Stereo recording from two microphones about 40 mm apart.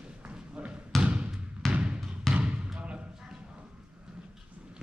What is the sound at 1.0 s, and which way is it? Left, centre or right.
Basketball bounce, right.